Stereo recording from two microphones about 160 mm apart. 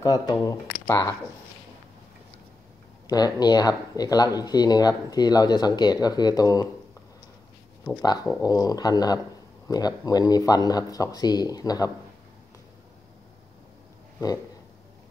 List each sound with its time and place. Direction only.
0.0 s speech: 25° left (ahead or behind)
0.8 s speech: 10° left (ahead or behind)
3.1 s speech: 25° left (ahead or behind)
8.0 s speech: 25° left (ahead or behind)